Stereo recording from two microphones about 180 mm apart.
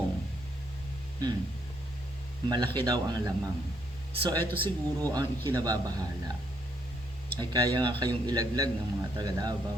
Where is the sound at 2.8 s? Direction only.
20° right (ahead or behind).